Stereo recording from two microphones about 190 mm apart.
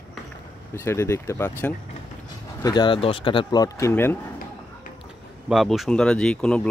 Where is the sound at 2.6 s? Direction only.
20° left (ahead or behind).